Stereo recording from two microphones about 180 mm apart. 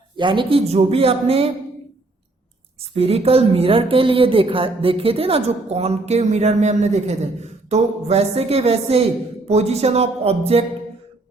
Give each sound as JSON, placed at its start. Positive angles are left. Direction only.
{"t": 0.2, "sound": "speech", "side_deg": -25}
{"t": 2.9, "sound": "speech", "side_deg": -35}